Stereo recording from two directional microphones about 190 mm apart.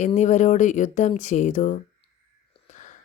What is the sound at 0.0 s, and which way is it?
Speech, 40° left (ahead or behind).